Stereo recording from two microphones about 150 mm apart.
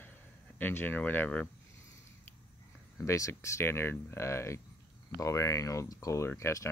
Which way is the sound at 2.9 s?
20° left (ahead or behind).